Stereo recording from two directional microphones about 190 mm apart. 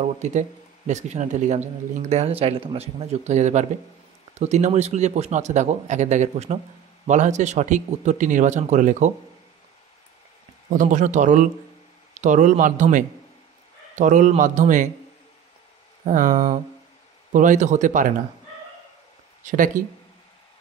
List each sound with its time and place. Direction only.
0.0 s speech: 40° right (ahead or behind)
10.7 s speech: 40° right (ahead or behind)
16.1 s speech: 45° right (ahead or behind)
19.4 s speech: 45° right (ahead or behind)